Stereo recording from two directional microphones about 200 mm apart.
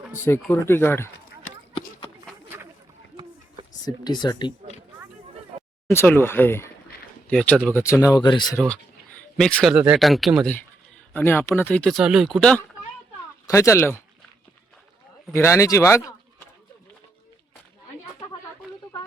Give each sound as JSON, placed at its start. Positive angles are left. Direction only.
{"t": 0.1, "sound": "speech", "side_deg": 10}
{"t": 3.2, "sound": "a sound", "side_deg": -25}
{"t": 3.8, "sound": "speech", "side_deg": 20}
{"t": 5.9, "sound": "speech", "side_deg": 10}
{"t": 9.4, "sound": "speech", "side_deg": 5}
{"t": 15.3, "sound": "speech", "side_deg": 10}